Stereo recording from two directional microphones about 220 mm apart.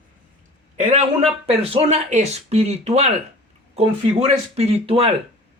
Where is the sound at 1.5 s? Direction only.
25° right (ahead or behind).